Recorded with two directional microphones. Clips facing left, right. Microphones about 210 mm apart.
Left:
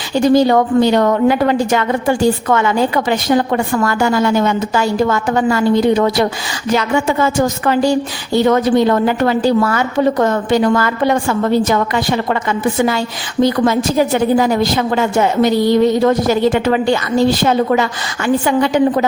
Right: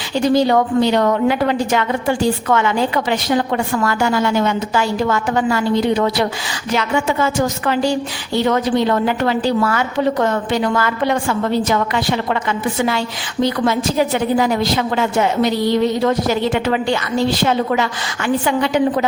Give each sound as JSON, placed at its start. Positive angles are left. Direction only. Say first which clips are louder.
{"t": 0.1, "sound": "a woman's voice", "louder": "left 3 dB", "side_deg": 45}